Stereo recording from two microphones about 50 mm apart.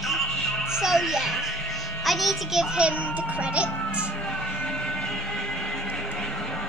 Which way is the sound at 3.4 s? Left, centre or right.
Right.